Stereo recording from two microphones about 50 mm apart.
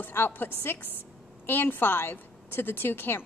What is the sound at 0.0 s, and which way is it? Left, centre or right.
A woman's voice, left.